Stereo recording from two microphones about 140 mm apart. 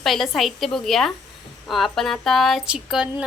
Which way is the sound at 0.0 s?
Centre (ahead or behind).